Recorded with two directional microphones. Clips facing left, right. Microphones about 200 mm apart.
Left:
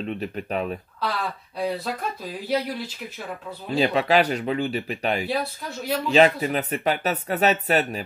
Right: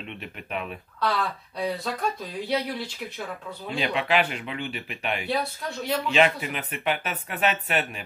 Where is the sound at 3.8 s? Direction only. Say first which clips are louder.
Left 5 dB; 40° left (ahead or behind).